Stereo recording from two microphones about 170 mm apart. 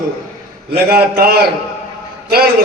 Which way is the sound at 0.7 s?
65° right (ahead or behind).